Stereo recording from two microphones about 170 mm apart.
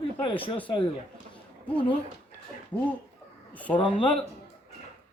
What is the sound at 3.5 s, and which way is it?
Speech, 10° left (ahead or behind).